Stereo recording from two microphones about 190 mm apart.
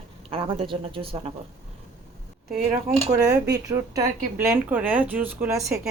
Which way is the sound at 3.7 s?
20° right (ahead or behind).